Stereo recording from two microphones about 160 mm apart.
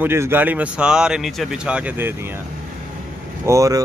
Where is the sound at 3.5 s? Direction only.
20° right (ahead or behind).